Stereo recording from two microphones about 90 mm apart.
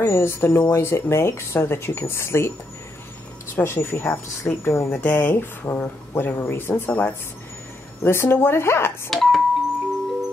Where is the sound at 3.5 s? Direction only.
25° left (ahead or behind).